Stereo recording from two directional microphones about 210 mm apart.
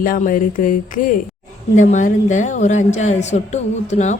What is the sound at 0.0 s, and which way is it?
A woman's voice, 40° left (ahead or behind).